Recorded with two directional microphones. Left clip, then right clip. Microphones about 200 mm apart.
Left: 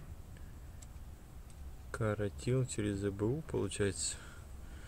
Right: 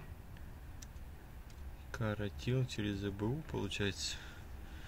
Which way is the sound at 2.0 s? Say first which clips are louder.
Left 4 dB; 45° left (ahead or behind).